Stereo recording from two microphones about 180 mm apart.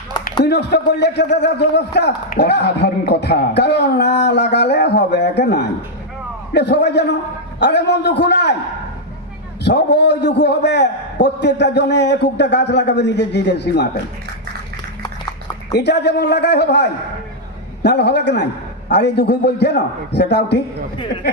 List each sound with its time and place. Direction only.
0.4 s a man's voice: 70° left (ahead or behind)
9.6 s a man's voice: 70° left (ahead or behind)
15.7 s a man's voice: 70° left (ahead or behind)